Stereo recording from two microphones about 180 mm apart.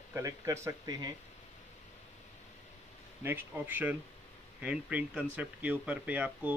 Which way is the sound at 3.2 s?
10° right (ahead or behind).